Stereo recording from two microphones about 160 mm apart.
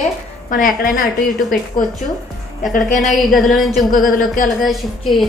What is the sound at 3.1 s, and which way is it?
A woman's voice, centre (ahead or behind).